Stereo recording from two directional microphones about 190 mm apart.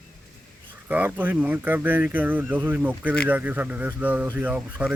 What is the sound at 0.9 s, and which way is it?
Speech, 10° right (ahead or behind).